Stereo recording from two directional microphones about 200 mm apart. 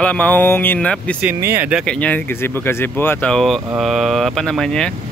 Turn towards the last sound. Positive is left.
turn(degrees=5)  # may be behind; listen again after turning